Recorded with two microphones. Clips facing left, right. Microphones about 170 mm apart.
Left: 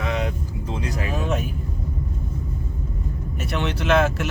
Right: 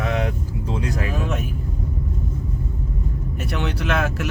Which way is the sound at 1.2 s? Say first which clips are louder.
Left 1 dB; 30° left (ahead or behind).